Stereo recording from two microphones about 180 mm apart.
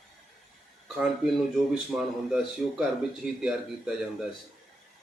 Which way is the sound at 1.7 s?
Centre (ahead or behind).